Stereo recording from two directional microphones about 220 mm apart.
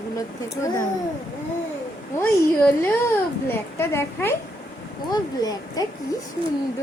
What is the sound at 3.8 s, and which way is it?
A woman's voice, 10° left (ahead or behind).